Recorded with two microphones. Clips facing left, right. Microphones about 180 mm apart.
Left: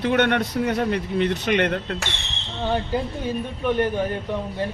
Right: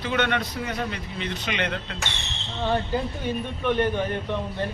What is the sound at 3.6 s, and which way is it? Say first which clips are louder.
Speech: left 2 dB; 10° left (ahead or behind).